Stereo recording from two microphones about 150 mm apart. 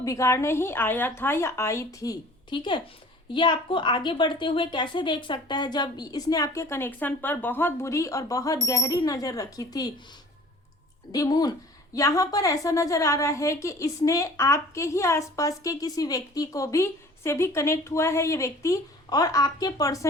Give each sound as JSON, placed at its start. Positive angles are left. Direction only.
{"t": 0.0, "sound": "a woman's voice", "side_deg": 20}
{"t": 11.1, "sound": "a woman's voice", "side_deg": 25}